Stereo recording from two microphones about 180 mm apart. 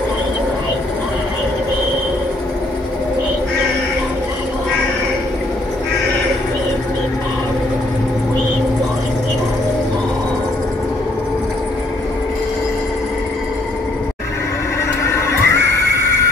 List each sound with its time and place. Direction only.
15.0 s neigh: 15° left (ahead or behind)